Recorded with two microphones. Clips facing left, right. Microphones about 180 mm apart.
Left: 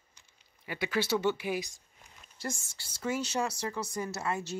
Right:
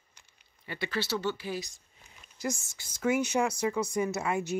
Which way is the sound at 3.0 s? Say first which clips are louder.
Right 5 dB; 10° right (ahead or behind).